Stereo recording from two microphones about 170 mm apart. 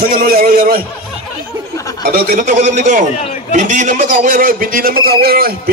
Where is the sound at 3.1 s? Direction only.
40° left (ahead or behind).